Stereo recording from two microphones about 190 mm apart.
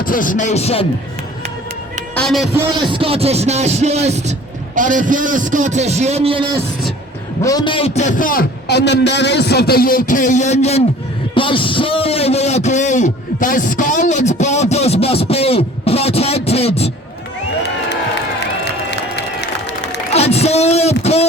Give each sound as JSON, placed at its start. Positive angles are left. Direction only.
{"t": 0.0, "sound": "speech", "side_deg": 45}
{"t": 2.1, "sound": "a man's voice", "side_deg": 0}
{"t": 2.6, "sound": "speech", "side_deg": -25}
{"t": 7.4, "sound": "a man's voice", "side_deg": 20}
{"t": 18.9, "sound": "a sound", "side_deg": 65}
{"t": 20.1, "sound": "speech", "side_deg": 35}